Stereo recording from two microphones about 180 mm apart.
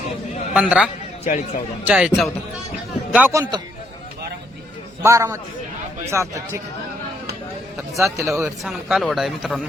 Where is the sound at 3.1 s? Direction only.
10° right (ahead or behind).